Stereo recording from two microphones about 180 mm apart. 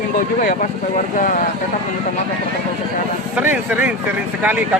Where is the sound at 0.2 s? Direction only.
45° left (ahead or behind).